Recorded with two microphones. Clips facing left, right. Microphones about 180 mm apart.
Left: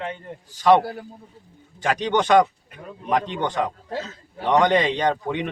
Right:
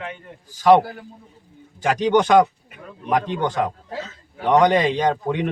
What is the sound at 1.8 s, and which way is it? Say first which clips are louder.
A man's voice: right 4 dB; 10° right (ahead or behind).